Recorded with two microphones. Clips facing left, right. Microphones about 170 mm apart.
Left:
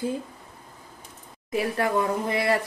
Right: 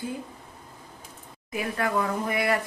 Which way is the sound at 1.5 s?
30° left (ahead or behind).